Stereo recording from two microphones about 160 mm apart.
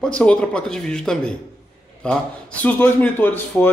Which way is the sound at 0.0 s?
5° left (ahead or behind).